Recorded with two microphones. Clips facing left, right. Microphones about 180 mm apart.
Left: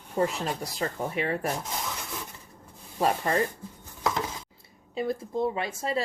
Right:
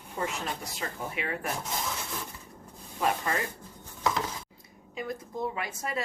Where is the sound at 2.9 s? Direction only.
35° left (ahead or behind).